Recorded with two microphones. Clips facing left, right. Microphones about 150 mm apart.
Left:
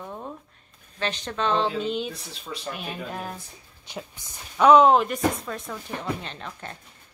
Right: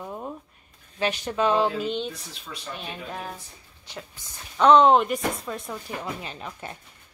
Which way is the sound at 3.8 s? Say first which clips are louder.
Left 3 dB; 20° left (ahead or behind).